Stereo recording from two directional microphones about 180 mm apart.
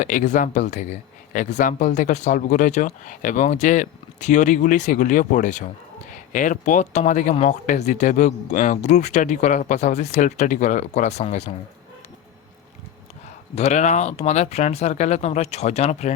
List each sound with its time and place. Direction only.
0.0 s speech: 45° left (ahead or behind)
13.6 s speech: 40° left (ahead or behind)